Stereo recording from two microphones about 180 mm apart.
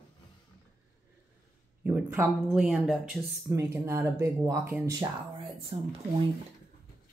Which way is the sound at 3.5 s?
15° right (ahead or behind).